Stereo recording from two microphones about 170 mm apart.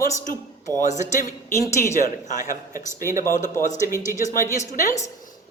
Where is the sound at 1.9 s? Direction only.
50° left (ahead or behind).